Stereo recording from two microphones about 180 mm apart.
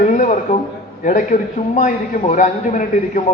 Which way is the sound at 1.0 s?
45° left (ahead or behind).